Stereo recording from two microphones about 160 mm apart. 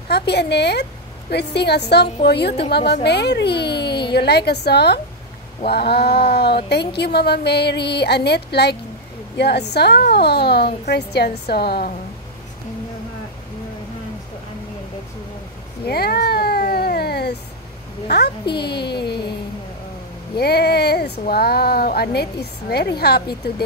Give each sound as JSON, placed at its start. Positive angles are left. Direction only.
{"t": 0.1, "sound": "a woman's voice", "side_deg": 90}
{"t": 15.8, "sound": "cat", "side_deg": 75}
{"t": 18.0, "sound": "a woman's voice", "side_deg": 90}
{"t": 18.4, "sound": "speech", "side_deg": 30}
{"t": 20.3, "sound": "speech", "side_deg": 85}